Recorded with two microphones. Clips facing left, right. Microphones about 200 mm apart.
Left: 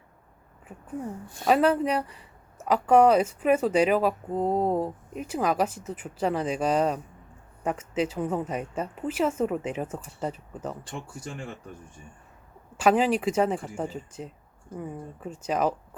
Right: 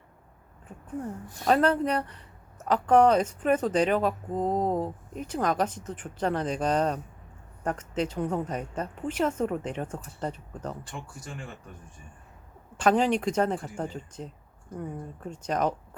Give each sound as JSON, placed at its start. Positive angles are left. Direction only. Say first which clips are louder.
{"t": 1.5, "sound": "speech", "louder": "left 1 dB", "side_deg": 5}
{"t": 12.7, "sound": "speech", "louder": "left 1 dB", "side_deg": 5}